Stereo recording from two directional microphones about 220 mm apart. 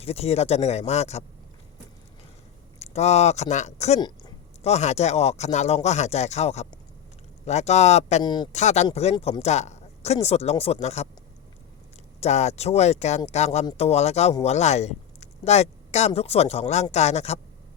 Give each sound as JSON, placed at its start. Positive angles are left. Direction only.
{"t": 0.0, "sound": "speech", "side_deg": 25}
{"t": 2.7, "sound": "speech", "side_deg": 30}
{"t": 8.2, "sound": "speech", "side_deg": 20}
{"t": 8.5, "sound": "speech", "side_deg": 30}
{"t": 12.2, "sound": "speech", "side_deg": 30}